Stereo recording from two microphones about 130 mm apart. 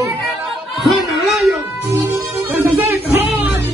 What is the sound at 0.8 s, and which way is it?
Speech, centre (ahead or behind).